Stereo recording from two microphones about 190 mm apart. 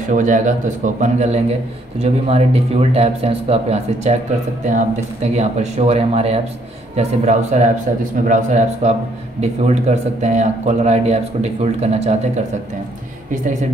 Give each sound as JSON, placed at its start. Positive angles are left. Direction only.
{"t": 0.1, "sound": "a man's voice", "side_deg": -40}